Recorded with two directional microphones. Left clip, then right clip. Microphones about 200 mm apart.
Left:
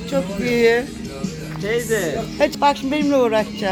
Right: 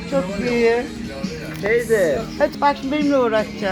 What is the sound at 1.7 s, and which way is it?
Speech, 45° left (ahead or behind).